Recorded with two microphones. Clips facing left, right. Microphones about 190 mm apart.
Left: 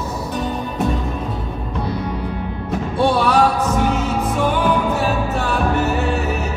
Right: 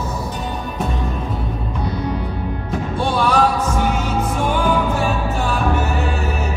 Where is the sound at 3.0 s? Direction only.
65° left (ahead or behind).